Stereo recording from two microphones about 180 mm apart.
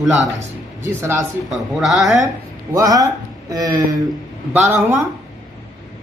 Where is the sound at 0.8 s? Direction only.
15° right (ahead or behind).